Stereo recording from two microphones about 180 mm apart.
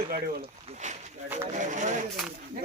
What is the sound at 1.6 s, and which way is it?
Speech, 45° right (ahead or behind).